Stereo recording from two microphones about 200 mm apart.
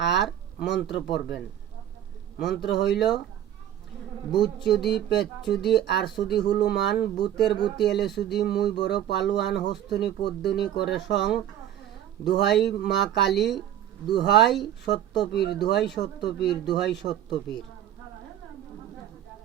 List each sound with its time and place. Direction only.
0.0 s a sound: 60° left (ahead or behind)
0.9 s speech: 55° left (ahead or behind)
2.4 s speech: 55° left (ahead or behind)
4.4 s speech: 55° left (ahead or behind)
13.4 s speech: centre (ahead or behind)
14.1 s speech: 60° left (ahead or behind)